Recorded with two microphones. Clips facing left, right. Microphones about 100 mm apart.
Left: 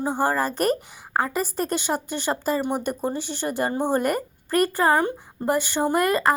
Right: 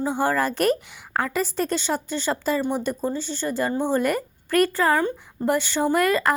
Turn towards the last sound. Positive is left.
turn(degrees=45)  # may be behind; listen again after turning